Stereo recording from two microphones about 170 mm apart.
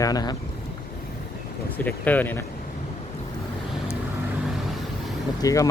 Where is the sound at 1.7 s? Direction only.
10° left (ahead or behind).